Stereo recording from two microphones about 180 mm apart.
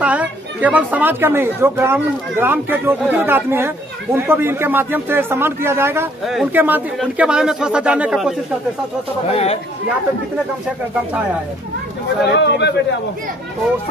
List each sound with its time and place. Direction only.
0.0 s speech: 10° right (ahead or behind)
6.2 s speech: 5° right (ahead or behind)
9.3 s speech: 35° left (ahead or behind)
12.3 s a man's voice: 75° left (ahead or behind)